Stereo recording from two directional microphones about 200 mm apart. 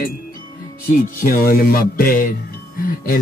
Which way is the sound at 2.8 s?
45° left (ahead or behind).